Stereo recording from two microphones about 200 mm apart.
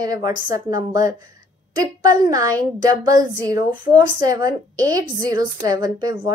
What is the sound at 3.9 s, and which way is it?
A woman's voice, 20° right (ahead or behind).